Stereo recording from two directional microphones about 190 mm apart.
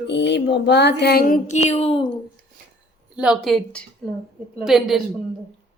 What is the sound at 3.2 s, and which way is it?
Speech, centre (ahead or behind).